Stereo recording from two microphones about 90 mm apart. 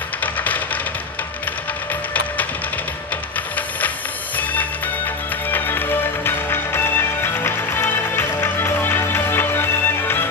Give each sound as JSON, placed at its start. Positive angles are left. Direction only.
{"t": 0.2, "sound": "music", "side_deg": 20}
{"t": 4.4, "sound": "music", "side_deg": 20}